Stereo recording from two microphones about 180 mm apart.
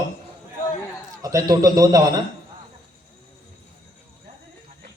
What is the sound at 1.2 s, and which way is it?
A man's voice, 20° right (ahead or behind).